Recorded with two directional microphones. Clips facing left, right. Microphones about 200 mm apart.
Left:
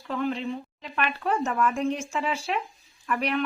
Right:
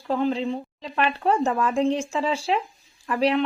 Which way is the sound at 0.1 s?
30° right (ahead or behind).